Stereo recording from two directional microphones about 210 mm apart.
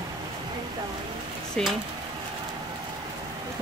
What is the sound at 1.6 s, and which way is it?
Speech, 5° left (ahead or behind).